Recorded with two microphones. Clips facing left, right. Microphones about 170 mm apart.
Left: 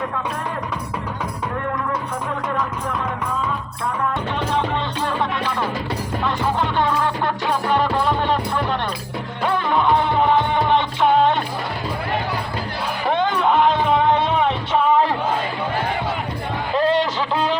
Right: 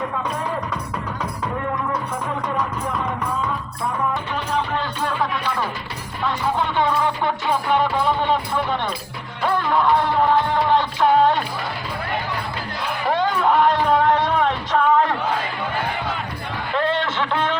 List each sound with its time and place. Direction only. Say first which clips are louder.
9.4 s music: even; centre (ahead or behind)
13.1 s music: even; centre (ahead or behind)
16.7 s a sound: left 3 dB; 35° left (ahead or behind)